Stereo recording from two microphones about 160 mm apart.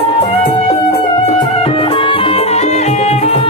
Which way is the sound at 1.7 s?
35° left (ahead or behind).